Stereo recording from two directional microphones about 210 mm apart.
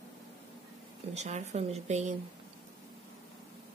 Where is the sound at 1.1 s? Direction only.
35° right (ahead or behind).